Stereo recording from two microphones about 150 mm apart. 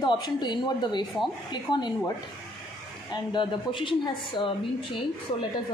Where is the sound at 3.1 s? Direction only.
30° left (ahead or behind).